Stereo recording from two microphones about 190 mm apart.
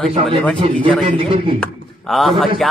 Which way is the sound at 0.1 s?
30° right (ahead or behind).